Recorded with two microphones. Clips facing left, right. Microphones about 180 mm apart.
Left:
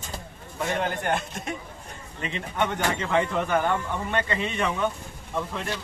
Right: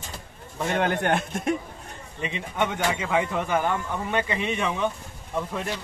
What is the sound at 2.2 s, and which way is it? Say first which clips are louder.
Speech: right 1 dB; 10° right (ahead or behind).